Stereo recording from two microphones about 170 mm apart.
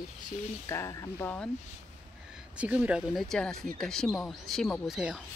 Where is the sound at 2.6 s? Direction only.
10° right (ahead or behind).